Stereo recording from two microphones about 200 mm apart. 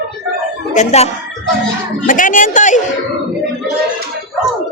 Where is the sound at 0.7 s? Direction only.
35° left (ahead or behind).